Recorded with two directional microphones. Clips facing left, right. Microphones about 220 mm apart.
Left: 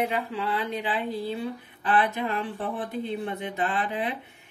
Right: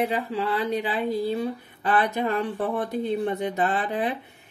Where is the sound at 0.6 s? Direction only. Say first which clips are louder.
Right 4 dB; 40° right (ahead or behind).